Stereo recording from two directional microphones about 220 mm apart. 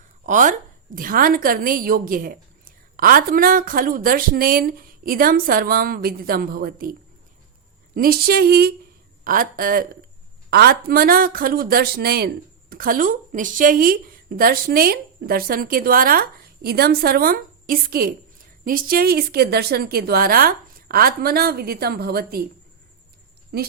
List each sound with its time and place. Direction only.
0.3 s a woman's voice: 35° right (ahead or behind)
7.9 s a woman's voice: 40° right (ahead or behind)
23.5 s speech: 45° right (ahead or behind)